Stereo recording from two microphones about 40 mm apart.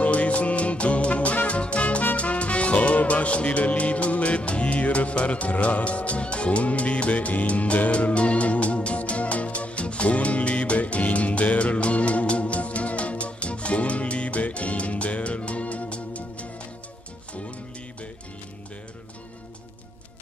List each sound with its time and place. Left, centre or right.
0.0 s music: left